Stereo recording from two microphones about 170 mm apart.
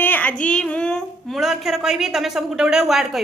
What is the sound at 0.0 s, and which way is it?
A woman's voice, 10° left (ahead or behind).